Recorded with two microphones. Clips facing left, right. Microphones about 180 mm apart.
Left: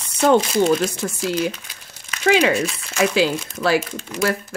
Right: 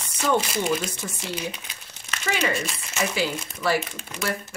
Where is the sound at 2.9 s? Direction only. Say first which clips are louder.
Left 8 dB; 90° left.